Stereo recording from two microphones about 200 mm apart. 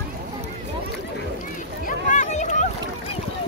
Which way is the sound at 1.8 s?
40° left (ahead or behind).